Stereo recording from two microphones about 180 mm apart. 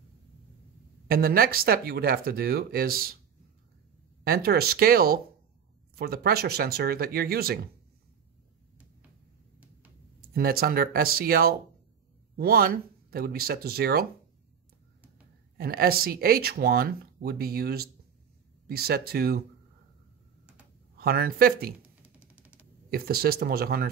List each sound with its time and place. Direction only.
1.0 s speech: 55° right (ahead or behind)
4.2 s speech: 60° right (ahead or behind)
10.3 s speech: 55° right (ahead or behind)
15.5 s speech: 60° right (ahead or behind)
21.0 s speech: 60° right (ahead or behind)
21.8 s a sound: 10° right (ahead or behind)
22.8 s speech: 55° right (ahead or behind)